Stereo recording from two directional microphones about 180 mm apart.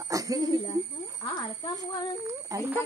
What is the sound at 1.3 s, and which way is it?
Speech, 25° left (ahead or behind).